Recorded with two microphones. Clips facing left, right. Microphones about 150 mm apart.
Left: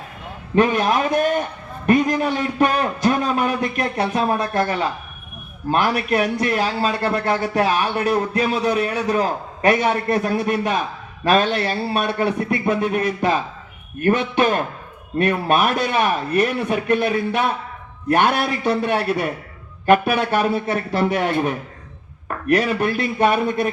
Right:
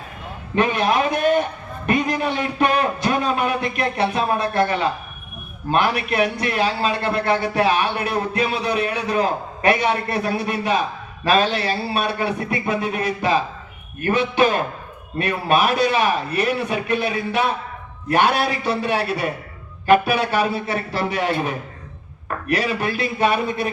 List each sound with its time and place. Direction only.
0.5 s a man's voice: 40° left (ahead or behind)
5.7 s a man's voice: 40° left (ahead or behind)